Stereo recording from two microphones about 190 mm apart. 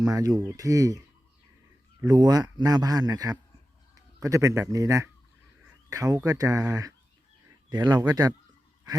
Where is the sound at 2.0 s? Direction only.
20° right (ahead or behind).